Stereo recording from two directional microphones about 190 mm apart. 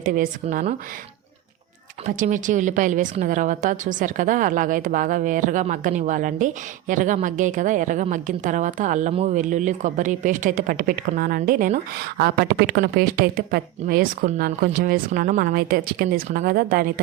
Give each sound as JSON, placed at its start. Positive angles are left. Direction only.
{"t": 0.0, "sound": "speech", "side_deg": -45}
{"t": 0.4, "sound": "speech", "side_deg": -35}
{"t": 2.0, "sound": "a woman's voice", "side_deg": -40}